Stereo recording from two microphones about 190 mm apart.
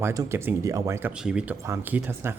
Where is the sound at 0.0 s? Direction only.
15° right (ahead or behind).